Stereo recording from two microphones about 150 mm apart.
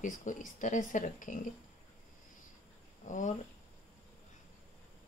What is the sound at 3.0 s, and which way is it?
Speech, 55° left (ahead or behind).